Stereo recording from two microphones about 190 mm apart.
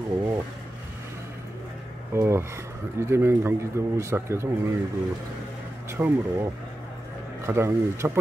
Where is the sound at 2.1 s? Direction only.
15° right (ahead or behind).